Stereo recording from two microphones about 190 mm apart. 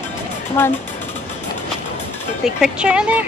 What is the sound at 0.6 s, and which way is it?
Speech, 15° left (ahead or behind).